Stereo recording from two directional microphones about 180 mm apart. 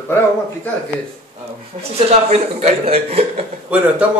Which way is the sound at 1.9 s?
35° right (ahead or behind).